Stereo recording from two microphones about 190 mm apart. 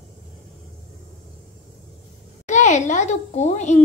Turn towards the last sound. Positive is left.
turn(degrees=40)  # may be behind; listen again after turning